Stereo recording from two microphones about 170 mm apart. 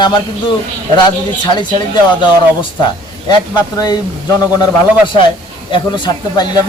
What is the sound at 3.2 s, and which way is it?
Speech, 25° left (ahead or behind).